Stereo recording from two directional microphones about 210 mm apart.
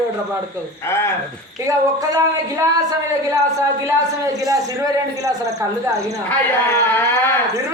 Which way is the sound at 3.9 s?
15° right (ahead or behind).